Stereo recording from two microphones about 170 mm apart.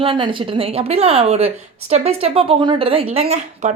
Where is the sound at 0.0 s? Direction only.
30° right (ahead or behind).